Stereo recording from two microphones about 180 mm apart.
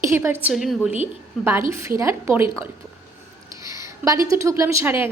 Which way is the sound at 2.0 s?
15° right (ahead or behind).